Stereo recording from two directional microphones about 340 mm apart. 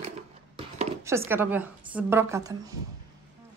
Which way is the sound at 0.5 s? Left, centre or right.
Centre.